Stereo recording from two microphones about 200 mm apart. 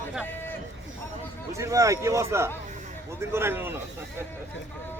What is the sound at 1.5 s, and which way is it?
Speech, 15° right (ahead or behind).